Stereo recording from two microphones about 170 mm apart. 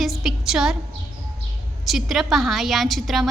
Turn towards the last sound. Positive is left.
turn(degrees=0)  # may be behind; listen again after turning